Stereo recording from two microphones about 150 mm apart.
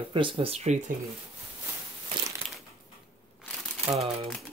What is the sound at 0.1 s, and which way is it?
Speech, 35° right (ahead or behind).